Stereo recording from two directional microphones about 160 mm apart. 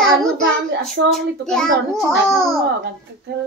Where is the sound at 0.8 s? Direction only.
5° left (ahead or behind).